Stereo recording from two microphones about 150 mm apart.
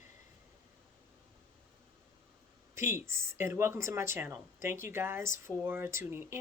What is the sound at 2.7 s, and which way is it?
Speech, 15° right (ahead or behind).